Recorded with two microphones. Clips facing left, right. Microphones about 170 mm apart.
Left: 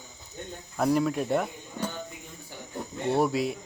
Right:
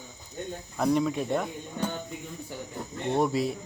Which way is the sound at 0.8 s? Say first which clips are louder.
Left 1 dB; centre (ahead or behind).